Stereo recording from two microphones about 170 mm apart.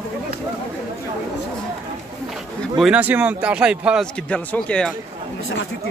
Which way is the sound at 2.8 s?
10° right (ahead or behind).